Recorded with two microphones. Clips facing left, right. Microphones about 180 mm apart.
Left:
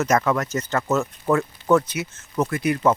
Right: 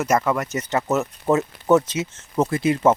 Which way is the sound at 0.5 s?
20° right (ahead or behind).